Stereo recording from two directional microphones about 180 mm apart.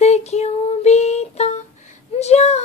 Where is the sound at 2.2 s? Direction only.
35° left (ahead or behind).